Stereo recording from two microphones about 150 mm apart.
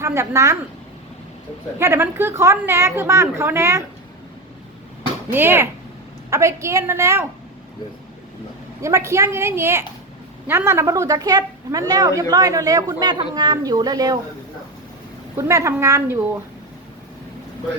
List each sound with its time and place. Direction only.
0.0 s a woman's voice: 20° right (ahead or behind)
1.8 s a woman's voice: 15° right (ahead or behind)
5.3 s a woman's voice: 15° right (ahead or behind)
8.8 s a woman's voice: 20° right (ahead or behind)
15.4 s a woman's voice: 20° right (ahead or behind)